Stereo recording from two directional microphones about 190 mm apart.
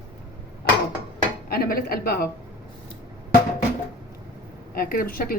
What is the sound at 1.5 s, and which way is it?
Speech, 50° left (ahead or behind).